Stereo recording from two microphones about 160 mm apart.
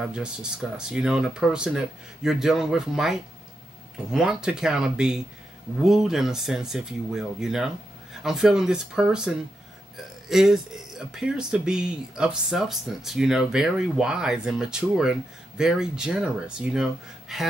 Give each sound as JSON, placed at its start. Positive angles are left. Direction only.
{"t": 0.0, "sound": "speech", "side_deg": -5}